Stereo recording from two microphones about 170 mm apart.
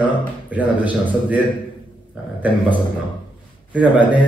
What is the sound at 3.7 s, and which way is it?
Speech, 10° right (ahead or behind).